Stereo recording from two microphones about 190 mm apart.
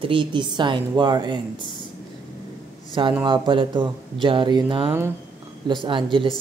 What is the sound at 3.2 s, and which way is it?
A woman's voice, 25° right (ahead or behind).